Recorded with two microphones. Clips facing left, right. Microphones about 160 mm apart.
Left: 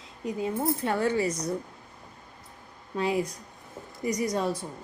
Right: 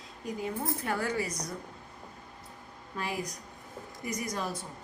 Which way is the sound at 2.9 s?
25° left (ahead or behind).